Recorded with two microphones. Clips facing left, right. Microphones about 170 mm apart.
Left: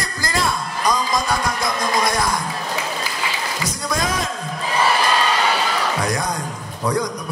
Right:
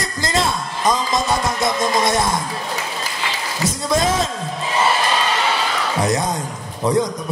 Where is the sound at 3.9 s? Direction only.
25° right (ahead or behind).